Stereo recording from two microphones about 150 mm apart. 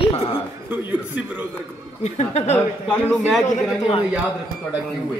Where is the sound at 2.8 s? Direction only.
5° left (ahead or behind).